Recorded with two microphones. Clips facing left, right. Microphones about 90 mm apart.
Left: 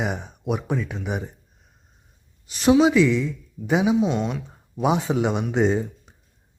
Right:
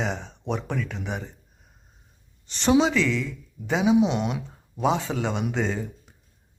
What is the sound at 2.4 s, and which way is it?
Speech, 5° left (ahead or behind).